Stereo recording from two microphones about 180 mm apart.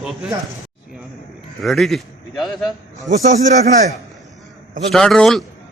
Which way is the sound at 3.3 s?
45° right (ahead or behind).